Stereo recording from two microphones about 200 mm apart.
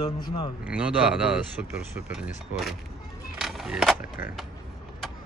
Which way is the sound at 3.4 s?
Centre (ahead or behind).